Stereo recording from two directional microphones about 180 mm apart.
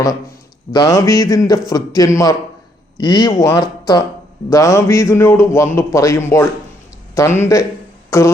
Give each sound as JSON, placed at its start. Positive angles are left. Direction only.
{"t": 0.7, "sound": "a man's voice", "side_deg": 20}